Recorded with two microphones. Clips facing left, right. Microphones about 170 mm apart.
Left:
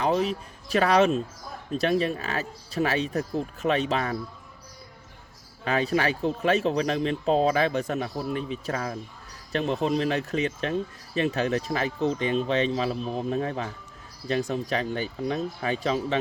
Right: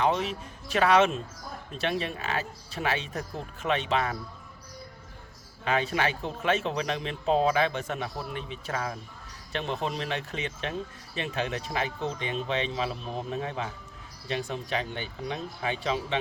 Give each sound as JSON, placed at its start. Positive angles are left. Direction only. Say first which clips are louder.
{"t": 0.0, "sound": "speech", "louder": "left 2 dB", "side_deg": 40}
{"t": 5.6, "sound": "speech", "louder": "left 3 dB", "side_deg": 40}